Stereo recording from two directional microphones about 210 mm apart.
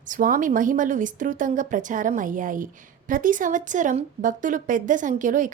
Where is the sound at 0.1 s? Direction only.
40° right (ahead or behind).